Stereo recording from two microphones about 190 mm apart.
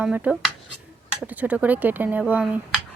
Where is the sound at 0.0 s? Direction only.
5° right (ahead or behind).